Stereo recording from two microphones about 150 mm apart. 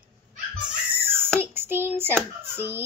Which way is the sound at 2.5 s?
15° right (ahead or behind).